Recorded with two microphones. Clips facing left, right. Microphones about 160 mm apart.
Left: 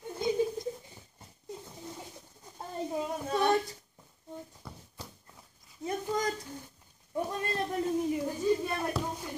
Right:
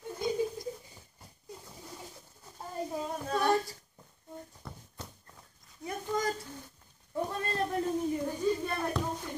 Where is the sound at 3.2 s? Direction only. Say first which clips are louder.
Left 1 dB; 20° left (ahead or behind).